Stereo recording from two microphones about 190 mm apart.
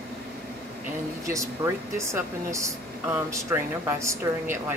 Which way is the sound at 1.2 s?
15° right (ahead or behind).